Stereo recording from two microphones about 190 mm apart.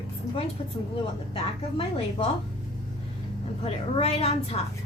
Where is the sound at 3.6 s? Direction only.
30° left (ahead or behind).